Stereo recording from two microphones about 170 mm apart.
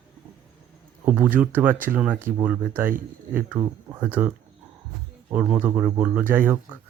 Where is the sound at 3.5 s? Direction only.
20° right (ahead or behind).